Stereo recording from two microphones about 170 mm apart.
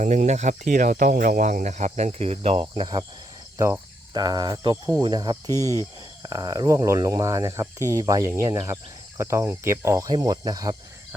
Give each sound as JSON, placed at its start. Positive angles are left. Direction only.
{"t": 0.0, "sound": "speech", "side_deg": -45}
{"t": 3.6, "sound": "cricket", "side_deg": -20}
{"t": 5.0, "sound": "speech", "side_deg": -25}